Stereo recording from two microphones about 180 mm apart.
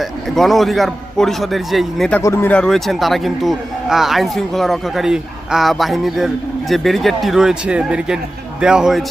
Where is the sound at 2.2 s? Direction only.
15° left (ahead or behind).